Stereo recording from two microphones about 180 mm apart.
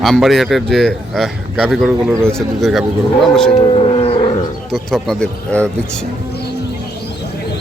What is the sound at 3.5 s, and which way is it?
Roaring cats, 30° left (ahead or behind).